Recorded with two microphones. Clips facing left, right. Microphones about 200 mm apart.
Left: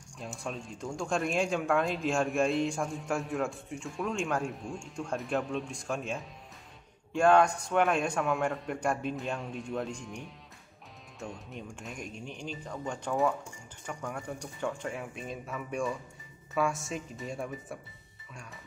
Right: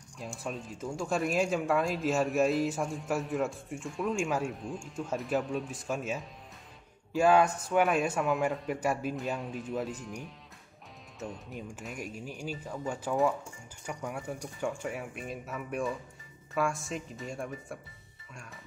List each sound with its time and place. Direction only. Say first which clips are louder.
0.2 s speech: right 1 dB; centre (ahead or behind)